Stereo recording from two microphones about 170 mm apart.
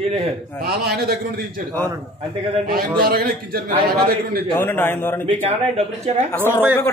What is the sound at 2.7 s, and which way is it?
Speech, 60° right (ahead or behind).